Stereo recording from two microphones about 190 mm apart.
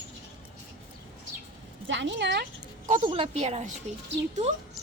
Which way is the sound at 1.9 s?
75° right (ahead or behind).